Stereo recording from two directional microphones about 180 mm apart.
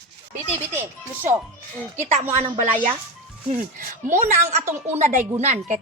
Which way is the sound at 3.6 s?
45° right (ahead or behind).